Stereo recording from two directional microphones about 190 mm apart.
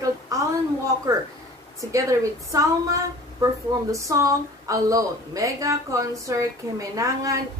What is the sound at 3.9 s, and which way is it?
A woman's voice, 15° right (ahead or behind).